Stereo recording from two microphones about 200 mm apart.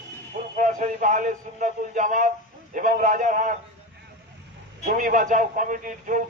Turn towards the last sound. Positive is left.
turn(degrees=-40)  # may be behind; listen again after turning